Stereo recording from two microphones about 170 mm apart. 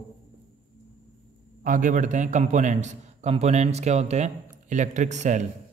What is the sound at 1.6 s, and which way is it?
Speech, 50° right (ahead or behind).